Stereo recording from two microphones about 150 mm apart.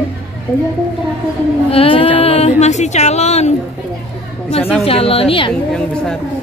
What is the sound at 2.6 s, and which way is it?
Speech, 50° left (ahead or behind).